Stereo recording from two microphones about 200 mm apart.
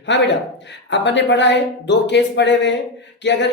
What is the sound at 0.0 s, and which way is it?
Speech, 65° left (ahead or behind).